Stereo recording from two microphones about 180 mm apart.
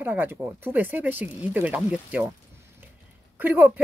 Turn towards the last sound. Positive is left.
turn(degrees=-10)  # may be behind; listen again after turning